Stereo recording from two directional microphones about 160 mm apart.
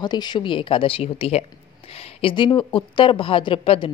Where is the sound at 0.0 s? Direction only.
25° left (ahead or behind).